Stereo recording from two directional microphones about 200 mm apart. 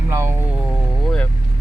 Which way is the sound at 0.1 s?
10° right (ahead or behind).